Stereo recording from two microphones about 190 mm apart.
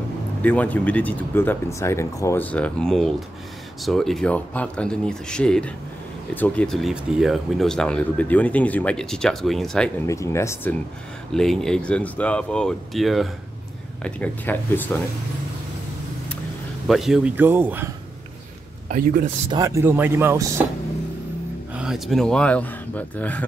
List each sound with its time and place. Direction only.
0.4 s speech: 10° left (ahead or behind)
10.0 s speech: 15° left (ahead or behind)
16.8 s a man's voice: centre (ahead or behind)
18.9 s speech: 45° right (ahead or behind)
19.5 s a man's voice: 15° right (ahead or behind)
21.7 s speech: 5° right (ahead or behind)